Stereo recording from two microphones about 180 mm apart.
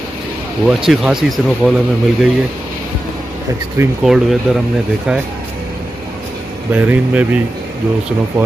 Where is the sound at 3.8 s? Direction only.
15° right (ahead or behind).